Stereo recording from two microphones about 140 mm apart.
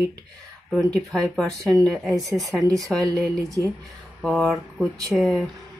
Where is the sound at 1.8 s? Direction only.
Centre (ahead or behind).